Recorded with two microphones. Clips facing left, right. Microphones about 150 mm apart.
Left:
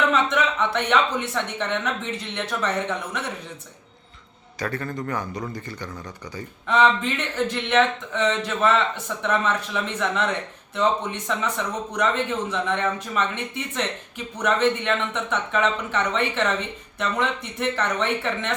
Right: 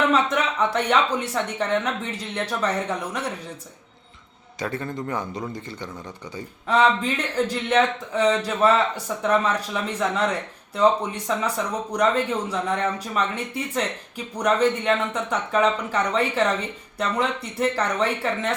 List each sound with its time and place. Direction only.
0.1 s speech: 35° right (ahead or behind)
4.6 s speech: 20° right (ahead or behind)
7.0 s speech: 35° right (ahead or behind)